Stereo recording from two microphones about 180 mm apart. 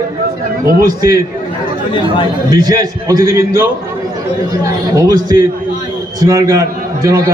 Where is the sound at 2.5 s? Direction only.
20° right (ahead or behind).